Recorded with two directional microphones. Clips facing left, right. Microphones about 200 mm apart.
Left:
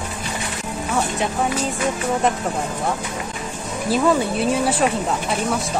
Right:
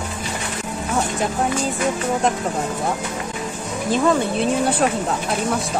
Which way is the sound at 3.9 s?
5° left (ahead or behind).